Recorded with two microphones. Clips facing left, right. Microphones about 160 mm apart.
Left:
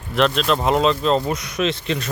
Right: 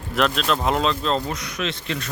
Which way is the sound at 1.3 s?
20° left (ahead or behind).